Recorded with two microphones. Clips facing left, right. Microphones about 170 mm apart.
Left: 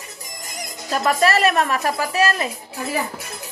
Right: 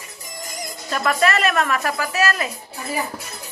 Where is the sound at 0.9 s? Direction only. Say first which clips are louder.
Left 2 dB; 35° left (ahead or behind).